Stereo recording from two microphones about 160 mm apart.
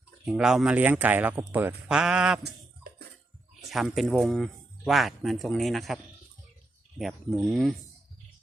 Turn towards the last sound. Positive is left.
turn(degrees=0)  # may be behind; listen again after turning